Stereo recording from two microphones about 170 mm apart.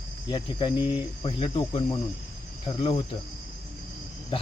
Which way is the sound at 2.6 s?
35° left (ahead or behind).